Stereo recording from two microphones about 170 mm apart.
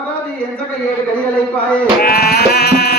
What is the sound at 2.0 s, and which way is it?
Sheep, 65° left (ahead or behind).